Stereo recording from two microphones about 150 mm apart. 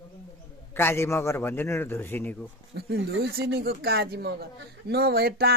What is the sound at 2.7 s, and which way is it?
Speech, 90° right.